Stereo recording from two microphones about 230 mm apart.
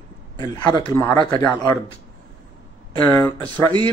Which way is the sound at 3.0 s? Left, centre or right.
Centre.